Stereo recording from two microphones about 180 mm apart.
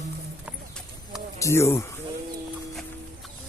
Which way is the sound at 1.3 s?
15° left (ahead or behind).